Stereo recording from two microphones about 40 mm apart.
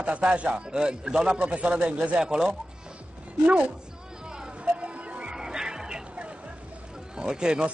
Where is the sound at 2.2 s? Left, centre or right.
Centre.